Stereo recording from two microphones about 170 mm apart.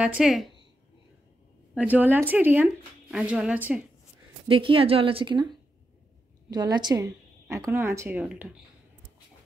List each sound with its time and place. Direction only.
0.0 s a woman's voice: 5° right (ahead or behind)
1.8 s a woman's voice: 10° right (ahead or behind)
4.5 s a woman's voice: 30° right (ahead or behind); by 8.5 s 10° right (ahead or behind)